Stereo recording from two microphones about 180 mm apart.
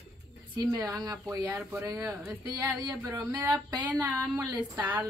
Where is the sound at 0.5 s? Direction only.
20° right (ahead or behind).